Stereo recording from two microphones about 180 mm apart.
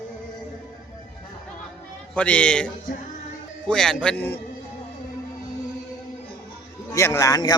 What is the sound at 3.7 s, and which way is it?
Speech, 5° left (ahead or behind).